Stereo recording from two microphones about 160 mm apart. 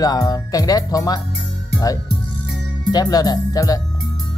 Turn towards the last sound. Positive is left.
turn(degrees=20)  # may be behind; listen again after turning